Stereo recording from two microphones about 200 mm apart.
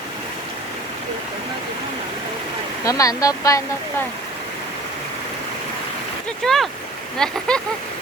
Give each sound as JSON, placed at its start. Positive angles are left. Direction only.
{"t": 2.8, "sound": "speech", "side_deg": 15}
{"t": 6.4, "sound": "speech", "side_deg": 0}